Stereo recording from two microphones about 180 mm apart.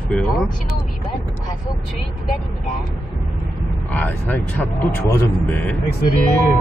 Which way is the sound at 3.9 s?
10° left (ahead or behind).